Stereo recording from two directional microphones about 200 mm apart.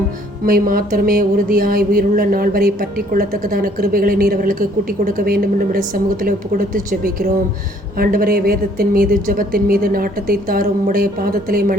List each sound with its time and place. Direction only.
0.4 s a woman's voice: 45° right (ahead or behind)